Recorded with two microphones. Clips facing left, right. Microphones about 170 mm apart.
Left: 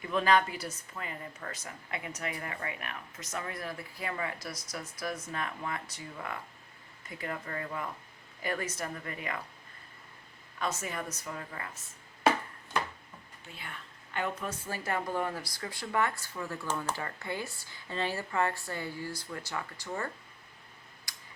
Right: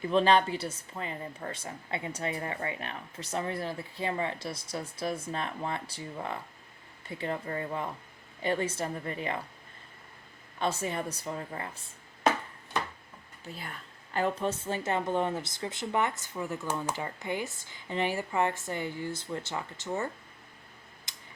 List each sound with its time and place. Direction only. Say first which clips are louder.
0.0 s a woman's voice: right 3 dB; 30° right (ahead or behind)
10.6 s a woman's voice: right 4 dB; 30° right (ahead or behind)
13.5 s a woman's voice: right 4 dB; 40° right (ahead or behind); by 20.1 s 25° right (ahead or behind)
21.1 s a sound: left 1 dB; 25° right (ahead or behind)